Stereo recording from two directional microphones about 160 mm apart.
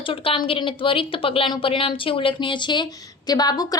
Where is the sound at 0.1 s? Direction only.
35° left (ahead or behind).